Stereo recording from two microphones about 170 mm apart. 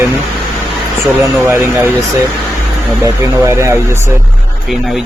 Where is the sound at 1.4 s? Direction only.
15° right (ahead or behind).